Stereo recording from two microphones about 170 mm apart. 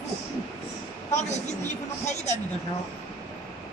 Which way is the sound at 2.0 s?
40° left (ahead or behind).